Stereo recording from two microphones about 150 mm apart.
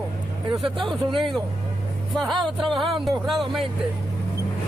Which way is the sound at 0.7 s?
Centre (ahead or behind).